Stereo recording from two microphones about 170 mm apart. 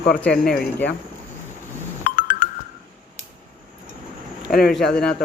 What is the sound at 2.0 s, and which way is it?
Music, 50° left (ahead or behind).